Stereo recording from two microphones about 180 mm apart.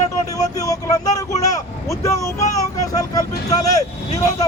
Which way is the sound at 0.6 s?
20° left (ahead or behind).